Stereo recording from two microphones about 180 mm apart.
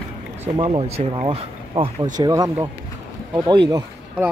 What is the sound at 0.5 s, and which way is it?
Speech, 30° right (ahead or behind).